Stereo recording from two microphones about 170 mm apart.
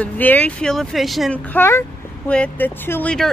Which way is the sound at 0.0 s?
10° left (ahead or behind).